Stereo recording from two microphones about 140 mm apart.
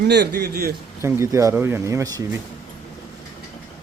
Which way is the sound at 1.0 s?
20° right (ahead or behind).